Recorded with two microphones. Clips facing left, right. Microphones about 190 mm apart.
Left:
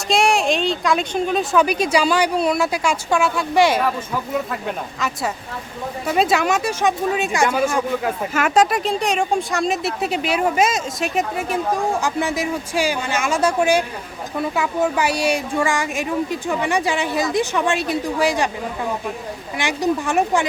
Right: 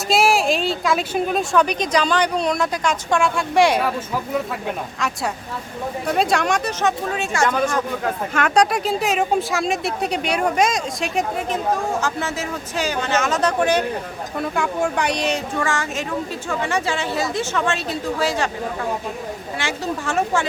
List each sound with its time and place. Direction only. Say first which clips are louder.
0.1 s speech: even; centre (ahead or behind)
4.9 s speech: even; centre (ahead or behind)
19.5 s speech: left 6 dB; 15° left (ahead or behind)